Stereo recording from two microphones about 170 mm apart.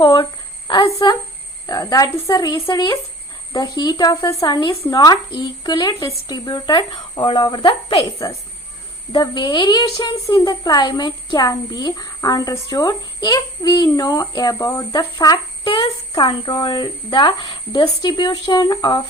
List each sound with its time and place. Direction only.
0.0 s a woman's voice: 25° left (ahead or behind)